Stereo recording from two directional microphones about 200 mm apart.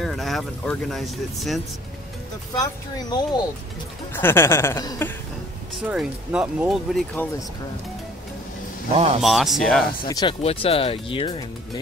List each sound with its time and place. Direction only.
0.0 s speech: centre (ahead or behind)
2.5 s speech: 20° left (ahead or behind)
5.9 s speech: 5° right (ahead or behind)
8.9 s speech: 30° right (ahead or behind)
9.2 s speech: centre (ahead or behind)
10.0 s speech: 20° left (ahead or behind)
10.4 s speech: 30° left (ahead or behind)